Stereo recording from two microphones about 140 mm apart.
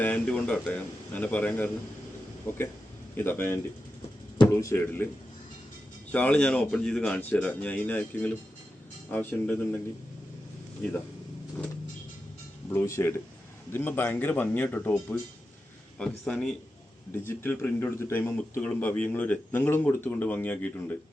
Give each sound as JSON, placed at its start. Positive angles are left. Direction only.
{"t": 0.0, "sound": "a man's voice", "side_deg": 10}
{"t": 4.6, "sound": "a man's voice", "side_deg": 15}
{"t": 6.1, "sound": "a man's voice", "side_deg": 10}
{"t": 12.6, "sound": "a man's voice", "side_deg": 20}
{"t": 17.1, "sound": "a man's voice", "side_deg": 15}